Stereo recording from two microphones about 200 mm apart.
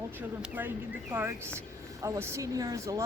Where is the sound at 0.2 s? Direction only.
10° right (ahead or behind).